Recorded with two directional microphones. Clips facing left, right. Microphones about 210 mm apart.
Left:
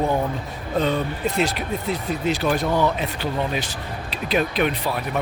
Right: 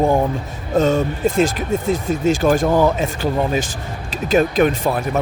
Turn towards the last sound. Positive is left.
turn(degrees=-45)  # may be behind; listen again after turning